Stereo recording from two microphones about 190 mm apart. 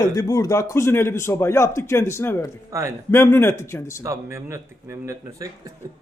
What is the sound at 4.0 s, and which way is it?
A man's voice, 15° right (ahead or behind).